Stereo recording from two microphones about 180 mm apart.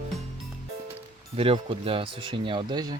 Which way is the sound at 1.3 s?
30° right (ahead or behind).